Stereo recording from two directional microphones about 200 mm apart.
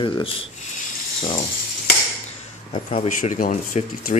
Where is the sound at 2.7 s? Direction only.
30° left (ahead or behind).